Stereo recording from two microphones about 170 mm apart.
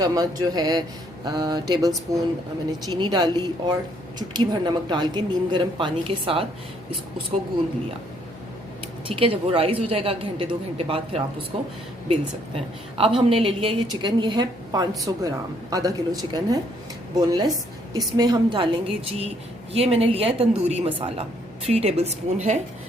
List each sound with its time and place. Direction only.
0.0 s a woman's voice: 20° right (ahead or behind)
9.0 s a woman's voice: 30° right (ahead or behind)